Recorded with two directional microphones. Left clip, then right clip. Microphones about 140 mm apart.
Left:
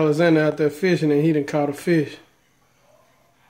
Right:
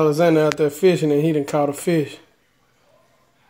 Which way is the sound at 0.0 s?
15° right (ahead or behind).